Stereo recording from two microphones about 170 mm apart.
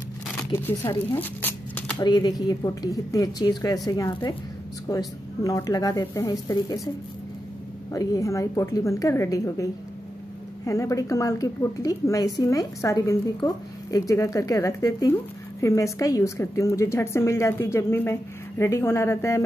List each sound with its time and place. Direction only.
0.5 s speech: 15° left (ahead or behind)
2.0 s a woman's voice: 25° left (ahead or behind)
7.9 s a woman's voice: 20° left (ahead or behind)